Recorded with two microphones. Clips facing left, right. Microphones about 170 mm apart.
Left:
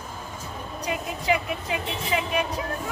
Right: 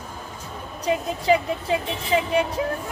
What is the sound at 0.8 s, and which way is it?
Speech, 30° right (ahead or behind).